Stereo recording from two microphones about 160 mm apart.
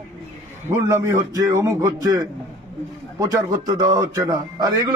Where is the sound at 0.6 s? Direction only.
20° right (ahead or behind).